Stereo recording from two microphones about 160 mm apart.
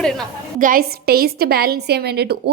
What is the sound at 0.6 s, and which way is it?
A woman's voice, 60° right (ahead or behind).